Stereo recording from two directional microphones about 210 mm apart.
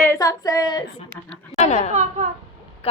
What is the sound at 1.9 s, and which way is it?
Speech, 35° right (ahead or behind).